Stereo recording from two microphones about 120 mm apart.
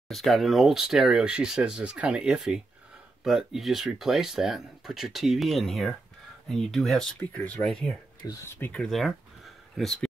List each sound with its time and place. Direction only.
0.1 s speech: centre (ahead or behind); by 8.8 s 15° left (ahead or behind)
8.8 s speech: centre (ahead or behind)